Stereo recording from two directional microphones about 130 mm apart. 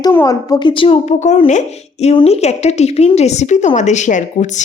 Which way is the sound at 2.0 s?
50° left (ahead or behind).